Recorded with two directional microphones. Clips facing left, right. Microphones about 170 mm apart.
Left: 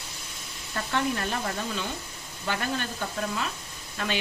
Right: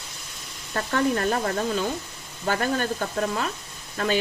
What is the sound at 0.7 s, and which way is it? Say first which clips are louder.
Speech: right 5 dB; 45° right (ahead or behind).